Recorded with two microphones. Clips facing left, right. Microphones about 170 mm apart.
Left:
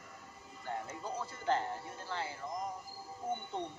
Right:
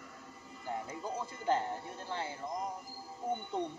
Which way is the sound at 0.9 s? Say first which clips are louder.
Right 2 dB; 15° right (ahead or behind).